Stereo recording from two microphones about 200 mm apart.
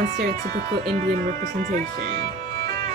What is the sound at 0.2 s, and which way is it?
Speech, 50° right (ahead or behind).